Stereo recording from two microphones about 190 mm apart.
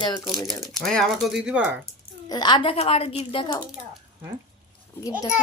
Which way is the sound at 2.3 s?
20° left (ahead or behind).